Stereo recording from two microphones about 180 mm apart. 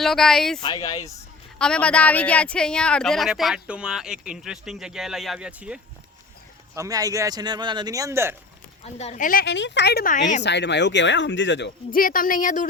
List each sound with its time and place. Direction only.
0.0 s speech: centre (ahead or behind)
0.6 s speech: 25° left (ahead or behind)
1.5 s speech: 5° left (ahead or behind)
6.7 s speech: 20° right (ahead or behind)
8.8 s a woman's voice: 35° left (ahead or behind)
10.4 s speech: 75° left (ahead or behind)
11.9 s a woman's voice: 50° left (ahead or behind)